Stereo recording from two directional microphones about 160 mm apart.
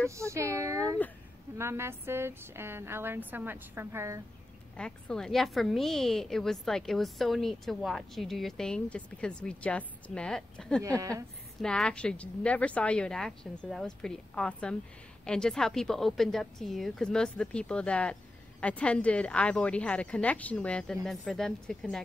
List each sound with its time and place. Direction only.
0.1 s a woman's voice: 20° right (ahead or behind)
4.7 s a woman's voice: 5° left (ahead or behind)
10.8 s speech: 20° right (ahead or behind)
11.6 s a woman's voice: 5° left (ahead or behind)